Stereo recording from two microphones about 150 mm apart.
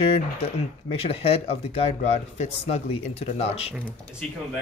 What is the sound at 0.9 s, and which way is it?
Speech, 40° left (ahead or behind).